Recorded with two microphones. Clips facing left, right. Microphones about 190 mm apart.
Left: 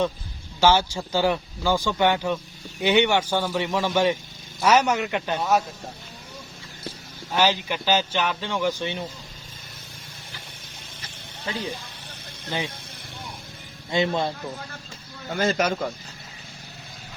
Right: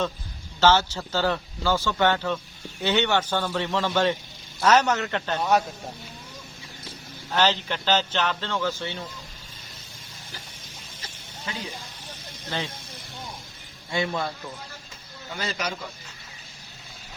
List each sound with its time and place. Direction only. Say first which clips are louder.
0.6 s a man's voice: left 1 dB; 10° left (ahead or behind)
5.4 s speech: right 1 dB; centre (ahead or behind)
7.3 s a man's voice: left 1 dB; 10° left (ahead or behind)
12.5 s a man's voice: left 2 dB; 15° left (ahead or behind)
13.9 s a man's voice: left 4 dB; 25° left (ahead or behind)
15.3 s speech: left 8 dB; 50° left (ahead or behind)